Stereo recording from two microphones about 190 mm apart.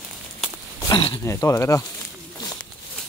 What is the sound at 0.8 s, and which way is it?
Speech, 25° left (ahead or behind).